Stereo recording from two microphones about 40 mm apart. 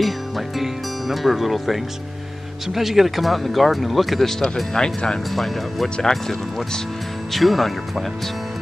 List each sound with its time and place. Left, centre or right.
0.6 s speech: centre
5.3 s speech: centre
5.9 s speech: centre
7.3 s speech: centre